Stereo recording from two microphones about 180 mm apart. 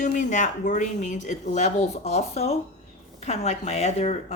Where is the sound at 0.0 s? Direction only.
45° left (ahead or behind).